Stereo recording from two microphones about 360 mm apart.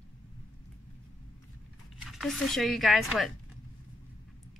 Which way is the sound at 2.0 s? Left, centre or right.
Centre.